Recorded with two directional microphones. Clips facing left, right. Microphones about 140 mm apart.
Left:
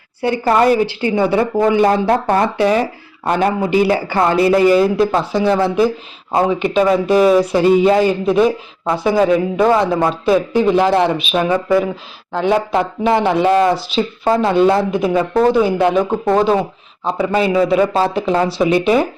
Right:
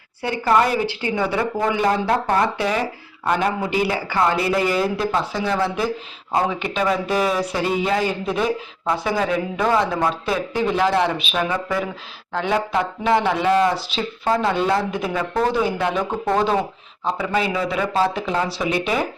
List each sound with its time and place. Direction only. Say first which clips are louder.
0.2 s a woman's voice: left 4 dB; 30° left (ahead or behind); by 16.5 s 15° left (ahead or behind)
17.0 s speech: left 6 dB; 25° left (ahead or behind)